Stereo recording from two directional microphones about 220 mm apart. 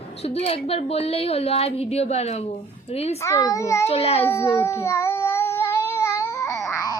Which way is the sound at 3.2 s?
15° left (ahead or behind).